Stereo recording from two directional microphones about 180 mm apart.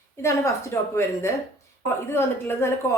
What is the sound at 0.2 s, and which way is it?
A woman's voice, 15° left (ahead or behind).